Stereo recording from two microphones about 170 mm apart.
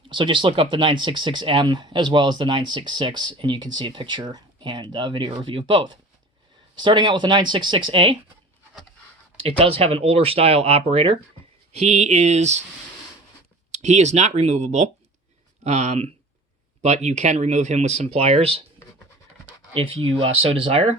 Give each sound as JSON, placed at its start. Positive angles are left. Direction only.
{"t": 0.1, "sound": "speech", "side_deg": -30}
{"t": 9.4, "sound": "speech", "side_deg": -30}
{"t": 13.7, "sound": "speech", "side_deg": -40}
{"t": 19.7, "sound": "speech", "side_deg": -35}